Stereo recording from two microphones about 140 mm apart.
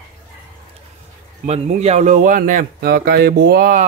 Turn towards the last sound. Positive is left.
turn(degrees=-80)